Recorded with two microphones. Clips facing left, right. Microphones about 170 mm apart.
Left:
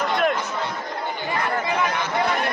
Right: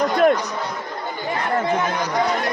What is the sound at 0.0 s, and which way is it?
Chatter, 40° right (ahead or behind).